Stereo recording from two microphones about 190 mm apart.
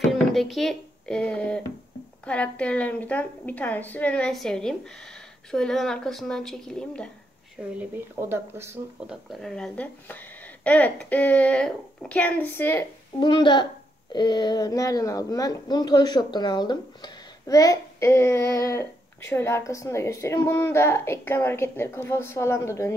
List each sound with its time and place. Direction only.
0.1 s a woman's voice: centre (ahead or behind)
7.5 s a woman's voice: 10° right (ahead or behind); by 12.8 s 10° left (ahead or behind)
13.2 s a child's voice: 25° left (ahead or behind)